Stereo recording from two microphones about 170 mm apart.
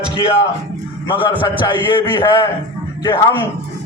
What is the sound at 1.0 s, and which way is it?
A man's voice, 30° left (ahead or behind).